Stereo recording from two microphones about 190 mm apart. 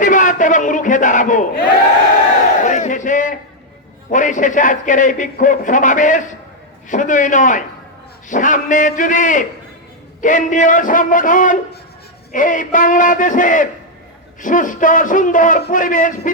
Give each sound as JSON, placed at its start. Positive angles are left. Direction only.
{"t": 0.0, "sound": "a sound", "side_deg": 40}
{"t": 2.6, "sound": "battle cry", "side_deg": 40}
{"t": 4.1, "sound": "a man's voice", "side_deg": 40}